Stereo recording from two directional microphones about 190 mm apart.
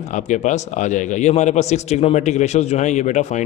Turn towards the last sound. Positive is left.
turn(degrees=40)  # may be behind; listen again after turning